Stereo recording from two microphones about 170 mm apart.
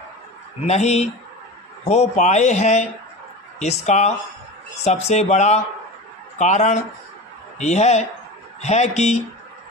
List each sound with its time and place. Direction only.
0.7 s speech: 40° left (ahead or behind)